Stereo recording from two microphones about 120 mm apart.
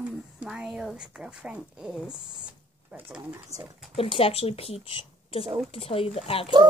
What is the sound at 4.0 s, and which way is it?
A woman's voice, 50° left (ahead or behind).